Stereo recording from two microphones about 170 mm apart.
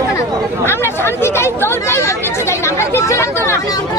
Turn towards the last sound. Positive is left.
turn(degrees=15)  # may be behind; listen again after turning